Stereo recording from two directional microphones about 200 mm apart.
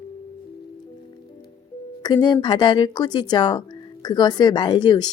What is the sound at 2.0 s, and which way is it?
Speech, 20° left (ahead or behind).